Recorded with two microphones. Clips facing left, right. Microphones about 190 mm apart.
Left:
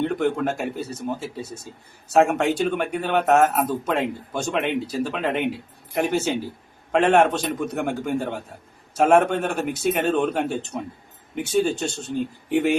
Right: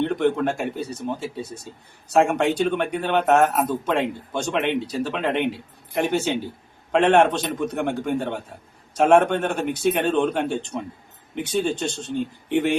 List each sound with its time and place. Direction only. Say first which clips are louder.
0.0 s speech: right 1 dB; 5° left (ahead or behind)